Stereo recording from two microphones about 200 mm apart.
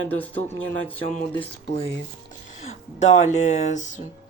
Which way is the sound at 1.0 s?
30° left (ahead or behind).